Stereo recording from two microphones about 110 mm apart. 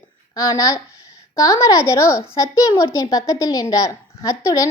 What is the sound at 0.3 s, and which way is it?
A woman's voice, 30° left (ahead or behind).